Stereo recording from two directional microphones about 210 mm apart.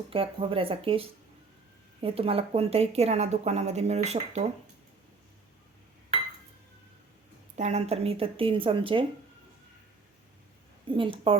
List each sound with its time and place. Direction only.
0.1 s a woman's voice: 25° right (ahead or behind)
7.5 s speech: 35° right (ahead or behind)
10.8 s speech: 25° right (ahead or behind)